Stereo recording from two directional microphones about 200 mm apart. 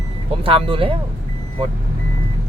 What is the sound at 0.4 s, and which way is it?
Speech, 25° right (ahead or behind).